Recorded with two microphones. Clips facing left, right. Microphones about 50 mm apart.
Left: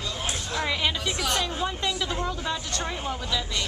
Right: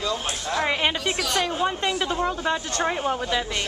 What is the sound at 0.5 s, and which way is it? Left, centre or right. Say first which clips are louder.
A woman's voice: right 4 dB; right.